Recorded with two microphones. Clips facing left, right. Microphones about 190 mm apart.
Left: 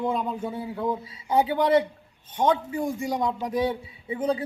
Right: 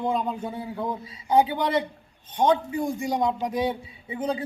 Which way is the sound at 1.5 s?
20° right (ahead or behind).